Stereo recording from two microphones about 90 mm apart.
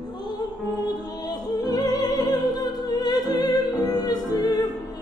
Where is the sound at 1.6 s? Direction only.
45° left (ahead or behind).